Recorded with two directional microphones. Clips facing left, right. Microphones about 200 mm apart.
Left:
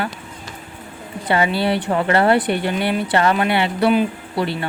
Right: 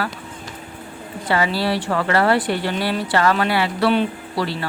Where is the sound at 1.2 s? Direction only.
20° left (ahead or behind).